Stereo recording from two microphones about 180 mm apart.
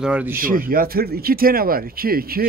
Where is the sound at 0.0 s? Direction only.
10° right (ahead or behind).